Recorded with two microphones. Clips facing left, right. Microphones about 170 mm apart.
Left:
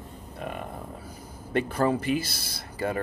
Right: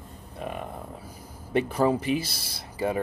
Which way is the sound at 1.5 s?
5° right (ahead or behind).